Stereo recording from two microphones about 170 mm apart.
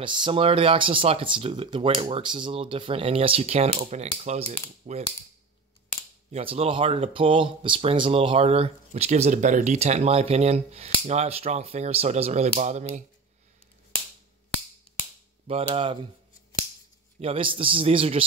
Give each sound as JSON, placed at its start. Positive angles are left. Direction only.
{"t": 0.0, "sound": "speech", "side_deg": -30}
{"t": 6.3, "sound": "speech", "side_deg": -35}
{"t": 15.4, "sound": "speech", "side_deg": -35}
{"t": 17.2, "sound": "speech", "side_deg": -35}